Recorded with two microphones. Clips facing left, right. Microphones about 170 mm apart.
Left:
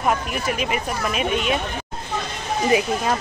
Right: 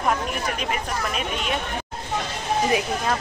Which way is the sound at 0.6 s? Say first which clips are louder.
Left 3 dB; 5° left (ahead or behind).